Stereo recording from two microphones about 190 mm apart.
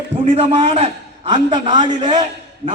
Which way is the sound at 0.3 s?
30° right (ahead or behind).